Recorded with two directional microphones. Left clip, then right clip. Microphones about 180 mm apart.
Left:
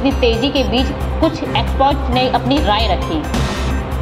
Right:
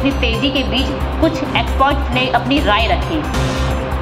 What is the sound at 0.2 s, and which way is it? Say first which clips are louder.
A woman's voice: left 2 dB; 35° left (ahead or behind).